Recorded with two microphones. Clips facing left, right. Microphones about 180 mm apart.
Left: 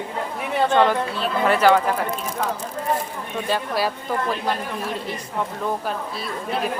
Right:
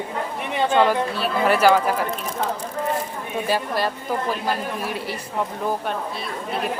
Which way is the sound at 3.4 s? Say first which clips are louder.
Even; 5° right (ahead or behind).